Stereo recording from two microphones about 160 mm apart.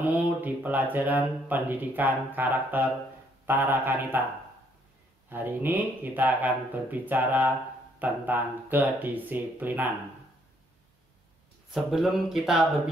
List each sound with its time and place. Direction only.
0.0 s speech: 10° right (ahead or behind)
5.3 s speech: 10° right (ahead or behind)
11.7 s speech: centre (ahead or behind)